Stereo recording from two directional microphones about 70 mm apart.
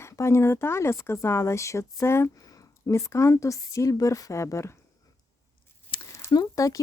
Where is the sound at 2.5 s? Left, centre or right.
Left.